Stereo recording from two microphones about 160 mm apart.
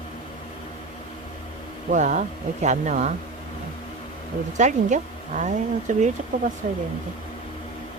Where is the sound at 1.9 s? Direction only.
50° right (ahead or behind).